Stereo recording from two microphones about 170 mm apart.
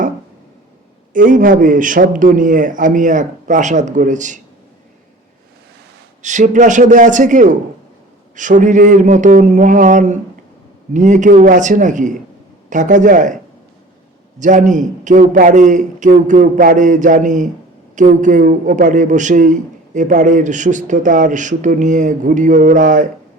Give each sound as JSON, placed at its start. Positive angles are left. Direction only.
{"t": 1.1, "sound": "a man's voice", "side_deg": -50}
{"t": 6.2, "sound": "a man's voice", "side_deg": -45}